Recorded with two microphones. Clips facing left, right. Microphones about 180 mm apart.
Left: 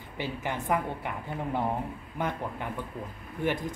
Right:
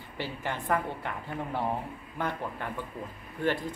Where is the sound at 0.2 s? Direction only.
15° left (ahead or behind).